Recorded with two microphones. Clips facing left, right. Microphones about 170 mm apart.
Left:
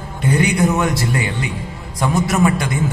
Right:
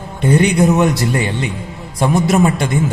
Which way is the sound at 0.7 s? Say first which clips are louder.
Right 4 dB; 20° right (ahead or behind).